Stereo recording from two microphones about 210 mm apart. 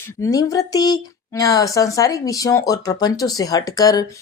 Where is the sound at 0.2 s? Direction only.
15° left (ahead or behind).